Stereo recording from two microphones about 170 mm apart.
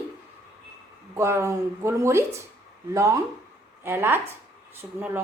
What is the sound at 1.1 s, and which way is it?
Speech, 15° right (ahead or behind).